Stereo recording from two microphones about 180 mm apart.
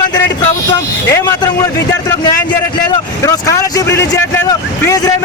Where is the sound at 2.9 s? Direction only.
20° left (ahead or behind).